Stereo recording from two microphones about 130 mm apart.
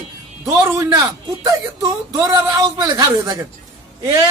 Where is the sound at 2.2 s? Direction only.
25° right (ahead or behind).